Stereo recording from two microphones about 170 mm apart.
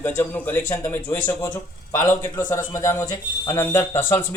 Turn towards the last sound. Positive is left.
turn(degrees=15)  # may be behind; listen again after turning